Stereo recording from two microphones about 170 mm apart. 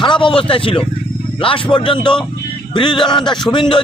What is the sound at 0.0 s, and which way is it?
A man's voice, 30° left (ahead or behind).